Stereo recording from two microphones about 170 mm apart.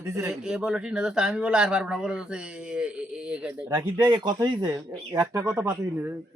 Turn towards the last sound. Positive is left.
turn(degrees=-15)  # may be behind; listen again after turning